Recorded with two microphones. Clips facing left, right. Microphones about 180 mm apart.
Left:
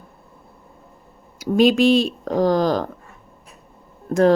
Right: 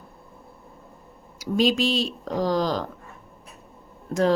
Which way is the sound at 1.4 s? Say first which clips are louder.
Left 6 dB; 55° left (ahead or behind).